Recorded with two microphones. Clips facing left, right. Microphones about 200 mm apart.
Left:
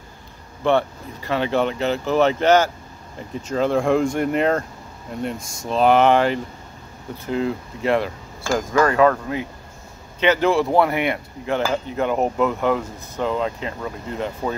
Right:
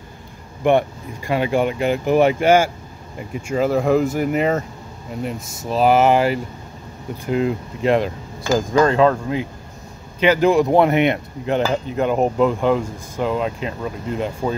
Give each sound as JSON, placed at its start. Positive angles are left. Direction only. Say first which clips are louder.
{"t": 0.7, "sound": "speech", "louder": "right 3 dB", "side_deg": -15}
{"t": 7.2, "sound": "speech", "louder": "right 3 dB", "side_deg": -15}